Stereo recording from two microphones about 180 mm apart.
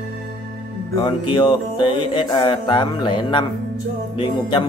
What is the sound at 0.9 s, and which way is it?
Speech, 25° left (ahead or behind).